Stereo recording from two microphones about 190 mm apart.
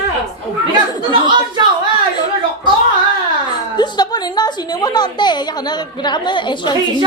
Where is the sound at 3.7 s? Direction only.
20° left (ahead or behind).